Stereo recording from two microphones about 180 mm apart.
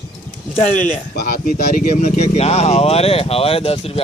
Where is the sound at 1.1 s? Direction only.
50° left (ahead or behind).